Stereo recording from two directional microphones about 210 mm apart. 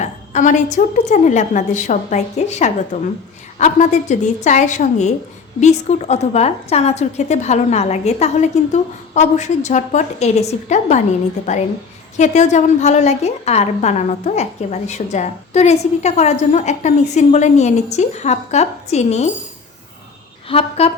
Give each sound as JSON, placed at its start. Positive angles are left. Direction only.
{"t": 0.0, "sound": "a woman's voice", "side_deg": 35}
{"t": 20.5, "sound": "a woman's voice", "side_deg": 30}